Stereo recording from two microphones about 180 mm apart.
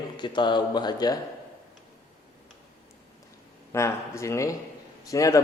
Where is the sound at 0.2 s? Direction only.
25° left (ahead or behind).